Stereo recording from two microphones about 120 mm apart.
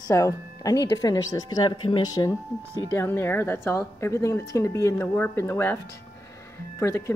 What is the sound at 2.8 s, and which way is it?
A woman's voice, 20° left (ahead or behind).